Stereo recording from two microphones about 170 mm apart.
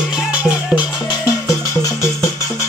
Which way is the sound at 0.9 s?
20° left (ahead or behind).